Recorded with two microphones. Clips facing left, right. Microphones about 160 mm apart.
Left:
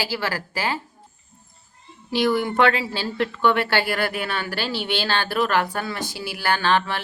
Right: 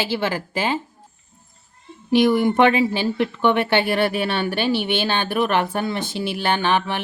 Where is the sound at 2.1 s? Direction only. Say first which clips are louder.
Right 5 dB; 20° right (ahead or behind).